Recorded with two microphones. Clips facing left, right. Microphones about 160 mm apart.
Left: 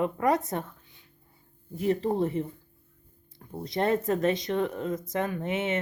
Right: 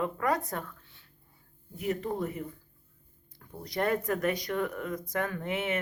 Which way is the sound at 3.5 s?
25° left (ahead or behind).